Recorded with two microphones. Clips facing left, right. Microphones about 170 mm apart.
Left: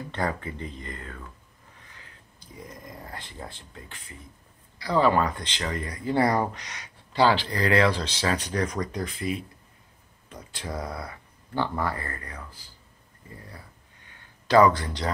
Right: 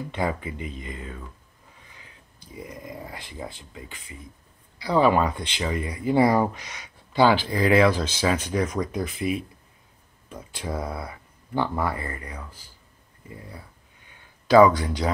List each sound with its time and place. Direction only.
0.1 s speech: 15° right (ahead or behind)
10.6 s speech: 10° right (ahead or behind)
10.9 s a sound: 25° right (ahead or behind)
11.6 s speech: 10° right (ahead or behind)
14.5 s speech: 10° right (ahead or behind)